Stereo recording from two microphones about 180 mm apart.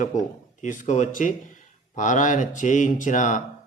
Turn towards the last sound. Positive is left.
turn(degrees=45)  # may be behind; listen again after turning